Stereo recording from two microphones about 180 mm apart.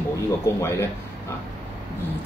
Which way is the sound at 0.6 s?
15° left (ahead or behind).